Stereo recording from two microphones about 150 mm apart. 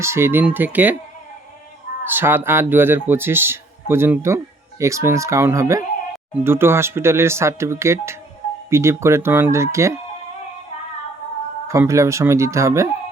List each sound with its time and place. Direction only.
0.0 s speech: 15° right (ahead or behind)
2.0 s speech: 15° right (ahead or behind)
11.7 s speech: 20° right (ahead or behind)